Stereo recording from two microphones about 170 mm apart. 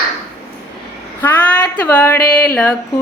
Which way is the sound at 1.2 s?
10° left (ahead or behind).